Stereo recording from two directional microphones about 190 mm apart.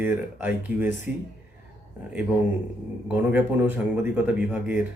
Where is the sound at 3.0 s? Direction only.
10° right (ahead or behind).